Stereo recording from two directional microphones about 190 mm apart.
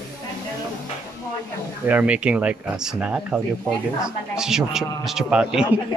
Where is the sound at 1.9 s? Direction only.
10° right (ahead or behind).